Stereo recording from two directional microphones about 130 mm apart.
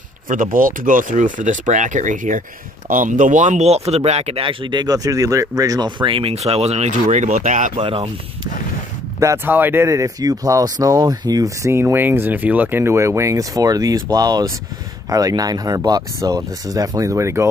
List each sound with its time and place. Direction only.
0.3 s speech: 90° right
2.9 s speech: 85° right
7.7 s speech: 45° right (ahead or behind)
9.2 s speech: 20° right (ahead or behind)